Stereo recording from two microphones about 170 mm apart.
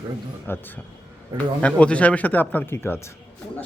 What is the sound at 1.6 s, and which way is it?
Speech, 5° left (ahead or behind).